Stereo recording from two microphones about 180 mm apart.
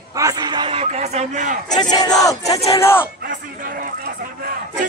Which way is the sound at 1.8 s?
20° left (ahead or behind).